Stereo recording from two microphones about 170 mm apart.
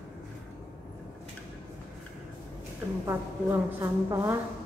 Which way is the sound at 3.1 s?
15° right (ahead or behind).